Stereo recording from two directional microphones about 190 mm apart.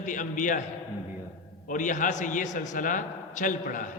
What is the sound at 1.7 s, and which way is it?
A man's voice, 45° left (ahead or behind).